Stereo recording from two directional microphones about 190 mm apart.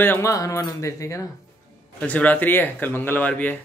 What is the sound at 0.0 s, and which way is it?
Speech, 15° left (ahead or behind).